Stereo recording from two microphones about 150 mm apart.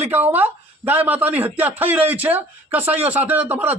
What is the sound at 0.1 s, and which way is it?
A man's voice, 15° right (ahead or behind).